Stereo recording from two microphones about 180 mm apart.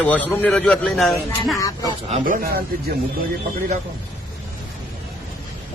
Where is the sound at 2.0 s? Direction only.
45° right (ahead or behind).